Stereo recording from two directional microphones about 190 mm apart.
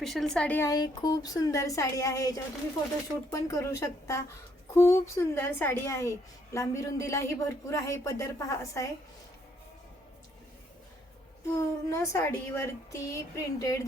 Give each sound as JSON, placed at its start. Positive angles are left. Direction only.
{"t": 0.0, "sound": "a woman's voice", "side_deg": 0}
{"t": 11.5, "sound": "a woman's voice", "side_deg": 15}